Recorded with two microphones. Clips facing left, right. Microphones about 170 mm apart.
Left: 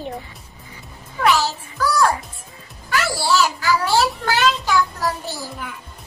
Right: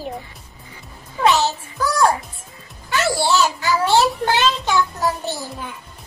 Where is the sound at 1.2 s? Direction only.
20° right (ahead or behind).